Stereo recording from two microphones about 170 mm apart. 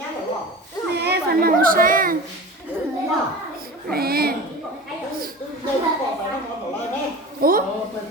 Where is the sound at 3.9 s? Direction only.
65° right (ahead or behind).